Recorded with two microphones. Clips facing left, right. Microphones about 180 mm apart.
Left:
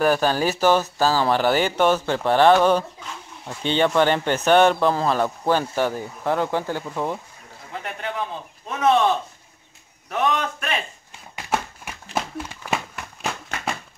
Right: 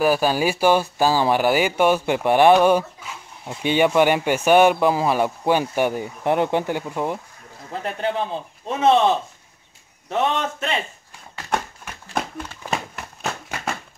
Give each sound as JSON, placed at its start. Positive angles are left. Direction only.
{"t": 0.0, "sound": "speech", "side_deg": -10}
{"t": 7.7, "sound": "a man's voice", "side_deg": -30}
{"t": 11.5, "sound": "a sound", "side_deg": 10}